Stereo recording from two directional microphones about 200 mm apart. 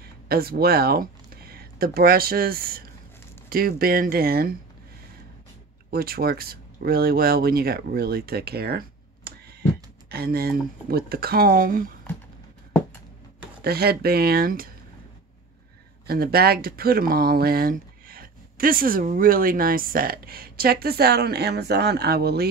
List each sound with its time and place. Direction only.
0.0 s speech: 50° right (ahead or behind)
5.9 s speech: 50° right (ahead or behind)
13.7 s speech: 50° right (ahead or behind)
16.1 s speech: 50° right (ahead or behind)